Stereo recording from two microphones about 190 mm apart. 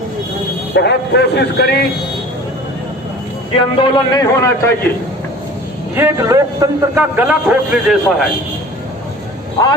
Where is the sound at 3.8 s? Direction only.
20° left (ahead or behind).